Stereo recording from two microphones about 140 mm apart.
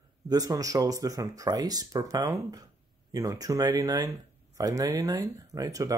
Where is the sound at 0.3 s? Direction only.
25° right (ahead or behind).